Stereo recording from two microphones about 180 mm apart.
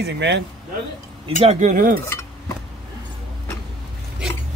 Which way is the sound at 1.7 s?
50° right (ahead or behind).